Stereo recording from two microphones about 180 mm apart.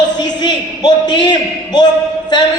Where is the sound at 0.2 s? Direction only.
25° left (ahead or behind).